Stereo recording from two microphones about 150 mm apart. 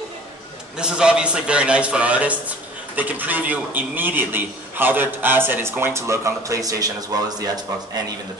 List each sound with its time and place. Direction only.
0.7 s a man's voice: 5° right (ahead or behind); by 7.4 s 25° right (ahead or behind)